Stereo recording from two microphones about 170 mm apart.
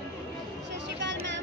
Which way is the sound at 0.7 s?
90° right.